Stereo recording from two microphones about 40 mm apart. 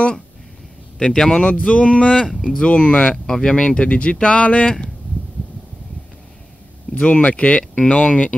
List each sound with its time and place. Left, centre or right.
0.9 s speech: centre
1.4 s speech: left
3.3 s speech: centre
3.8 s speech: left
7.0 s speech: left